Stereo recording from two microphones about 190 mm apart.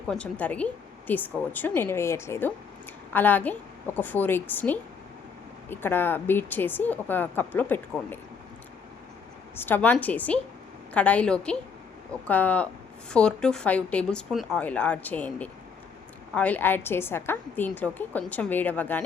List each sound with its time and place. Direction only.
0.1 s a woman's voice: 5° left (ahead or behind)
9.6 s a woman's voice: 10° left (ahead or behind)